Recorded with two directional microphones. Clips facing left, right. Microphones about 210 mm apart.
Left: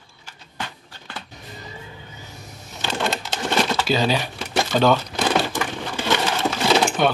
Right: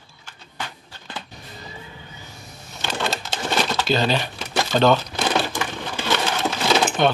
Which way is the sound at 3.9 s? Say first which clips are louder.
Even; 10° left (ahead or behind).